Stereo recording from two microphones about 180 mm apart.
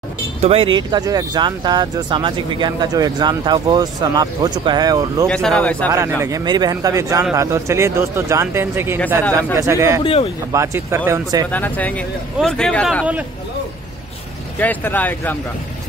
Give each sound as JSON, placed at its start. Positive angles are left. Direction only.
{"t": 0.4, "sound": "speech", "side_deg": -30}
{"t": 5.2, "sound": "speech", "side_deg": 5}
{"t": 5.9, "sound": "speech", "side_deg": -20}
{"t": 11.5, "sound": "speech", "side_deg": 10}
{"t": 14.6, "sound": "speech", "side_deg": 10}